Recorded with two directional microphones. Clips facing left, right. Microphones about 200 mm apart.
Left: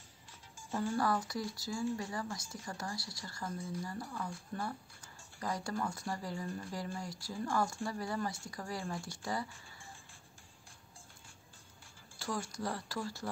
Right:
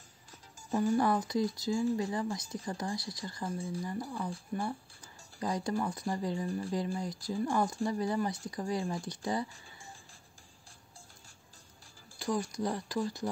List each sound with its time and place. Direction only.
0.7 s speech: 20° right (ahead or behind)
3.4 s speech: 30° right (ahead or behind)
3.8 s speech: 15° right (ahead or behind)
12.2 s speech: 15° right (ahead or behind)